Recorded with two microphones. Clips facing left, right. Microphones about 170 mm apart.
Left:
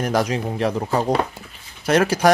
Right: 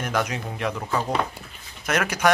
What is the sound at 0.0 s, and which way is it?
Speech, 35° left (ahead or behind).